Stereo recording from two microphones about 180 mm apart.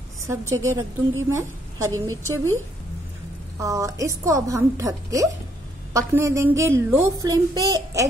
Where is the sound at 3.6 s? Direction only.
20° right (ahead or behind).